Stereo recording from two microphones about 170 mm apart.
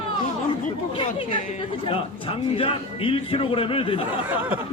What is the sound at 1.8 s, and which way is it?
Speech, 30° left (ahead or behind).